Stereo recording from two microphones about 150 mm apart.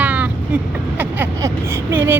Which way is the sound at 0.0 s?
10° right (ahead or behind).